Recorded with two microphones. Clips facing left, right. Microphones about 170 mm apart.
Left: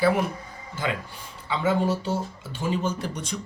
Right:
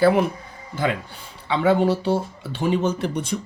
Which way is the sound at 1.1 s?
70° right (ahead or behind).